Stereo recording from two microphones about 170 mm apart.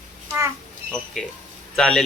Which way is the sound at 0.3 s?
20° right (ahead or behind).